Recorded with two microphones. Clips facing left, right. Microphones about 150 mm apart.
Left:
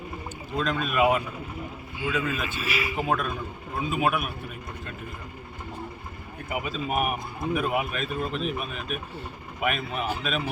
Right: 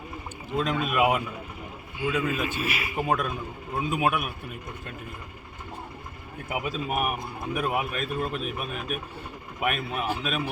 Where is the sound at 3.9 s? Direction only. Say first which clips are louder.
Even; 5° right (ahead or behind).